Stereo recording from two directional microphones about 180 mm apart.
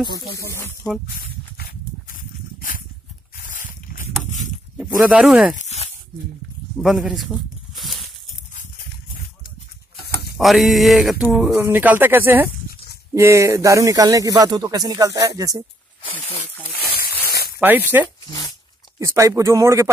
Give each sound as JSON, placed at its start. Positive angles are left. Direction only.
{"t": 0.5, "sound": "speech", "side_deg": 15}
{"t": 1.0, "sound": "a sound", "side_deg": 55}
{"t": 4.7, "sound": "speech", "side_deg": -10}
{"t": 5.6, "sound": "a sound", "side_deg": 40}
{"t": 6.8, "sound": "speech", "side_deg": 0}
{"t": 10.3, "sound": "speech", "side_deg": 0}
{"t": 16.0, "sound": "speech", "side_deg": 30}
{"t": 16.7, "sound": "a sound", "side_deg": 60}
{"t": 17.6, "sound": "speech", "side_deg": -10}
{"t": 18.9, "sound": "speech", "side_deg": -15}